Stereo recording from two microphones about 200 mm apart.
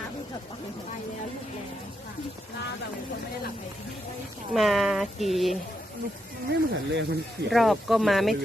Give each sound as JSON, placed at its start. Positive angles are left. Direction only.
{"t": 4.5, "sound": "speech", "side_deg": 0}
{"t": 6.5, "sound": "speech", "side_deg": -60}
{"t": 7.5, "sound": "speech", "side_deg": 0}